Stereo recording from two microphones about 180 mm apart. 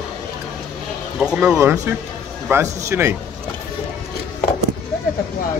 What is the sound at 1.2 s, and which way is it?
Speech, 5° right (ahead or behind).